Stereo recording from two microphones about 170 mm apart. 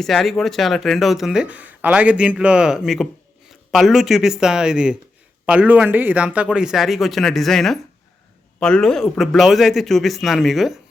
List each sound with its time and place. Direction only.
0.0 s speech: centre (ahead or behind)